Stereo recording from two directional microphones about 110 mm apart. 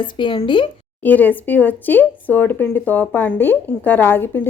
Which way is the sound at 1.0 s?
15° left (ahead or behind).